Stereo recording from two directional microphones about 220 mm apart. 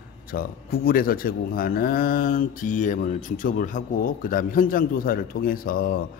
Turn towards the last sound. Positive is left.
turn(degrees=40)  # may be behind; listen again after turning